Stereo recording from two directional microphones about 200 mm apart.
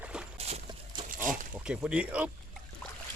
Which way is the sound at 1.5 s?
5° right (ahead or behind).